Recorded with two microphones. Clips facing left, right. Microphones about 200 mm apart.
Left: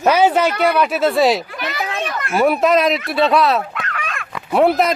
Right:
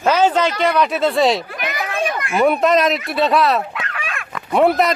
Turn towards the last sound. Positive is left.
turn(degrees=0)  # may be behind; listen again after turning